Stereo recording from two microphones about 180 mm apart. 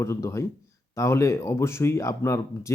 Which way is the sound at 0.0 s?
15° left (ahead or behind).